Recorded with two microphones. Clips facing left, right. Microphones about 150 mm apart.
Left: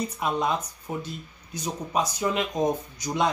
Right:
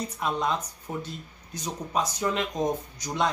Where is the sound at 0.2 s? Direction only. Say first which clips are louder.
Left 1 dB; 10° left (ahead or behind).